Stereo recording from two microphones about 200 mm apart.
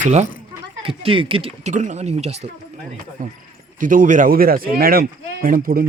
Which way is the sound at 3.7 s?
40° right (ahead or behind).